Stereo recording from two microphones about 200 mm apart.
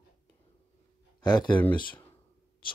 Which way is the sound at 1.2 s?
20° left (ahead or behind).